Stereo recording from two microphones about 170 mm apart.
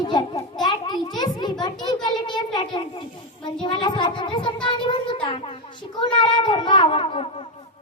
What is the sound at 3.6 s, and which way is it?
A child's voice, 25° left (ahead or behind).